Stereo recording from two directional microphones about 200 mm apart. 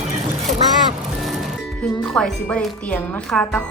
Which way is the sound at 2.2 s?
5° left (ahead or behind).